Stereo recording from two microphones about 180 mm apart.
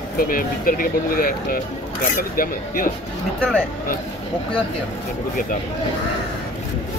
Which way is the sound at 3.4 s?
5° left (ahead or behind).